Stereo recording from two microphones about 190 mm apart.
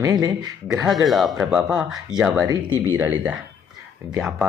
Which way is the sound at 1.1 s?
Centre (ahead or behind).